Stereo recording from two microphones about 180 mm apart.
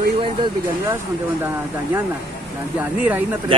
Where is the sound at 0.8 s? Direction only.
15° right (ahead or behind).